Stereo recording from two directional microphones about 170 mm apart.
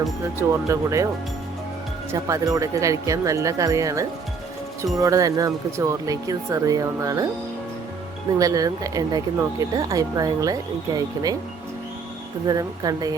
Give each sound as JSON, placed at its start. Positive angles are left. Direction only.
{"t": 0.3, "sound": "speech", "side_deg": -15}
{"t": 2.1, "sound": "speech", "side_deg": -20}
{"t": 8.4, "sound": "speech", "side_deg": -20}
{"t": 12.5, "sound": "speech", "side_deg": -20}